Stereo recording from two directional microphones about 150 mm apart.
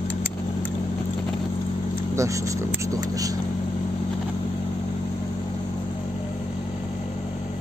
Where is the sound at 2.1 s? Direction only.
20° right (ahead or behind).